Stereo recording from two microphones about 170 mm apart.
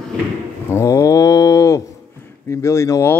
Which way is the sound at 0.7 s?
15° left (ahead or behind).